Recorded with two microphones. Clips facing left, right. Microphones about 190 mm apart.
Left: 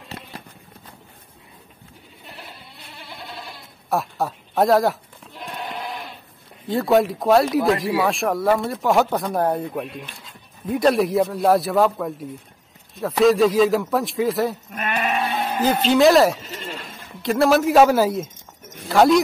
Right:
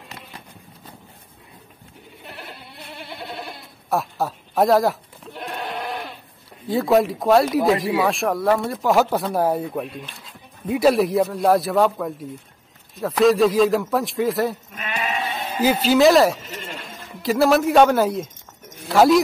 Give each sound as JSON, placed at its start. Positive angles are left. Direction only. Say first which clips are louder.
{"t": 3.9, "sound": "speech", "louder": "even", "side_deg": 0}
{"t": 6.7, "sound": "a man's voice", "louder": "even", "side_deg": 0}
{"t": 14.7, "sound": "sheep", "louder": "left 3 dB", "side_deg": 55}
{"t": 15.6, "sound": "a man's voice", "louder": "right 1 dB", "side_deg": -5}